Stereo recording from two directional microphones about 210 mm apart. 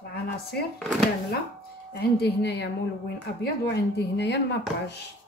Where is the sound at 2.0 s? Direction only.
50° left (ahead or behind).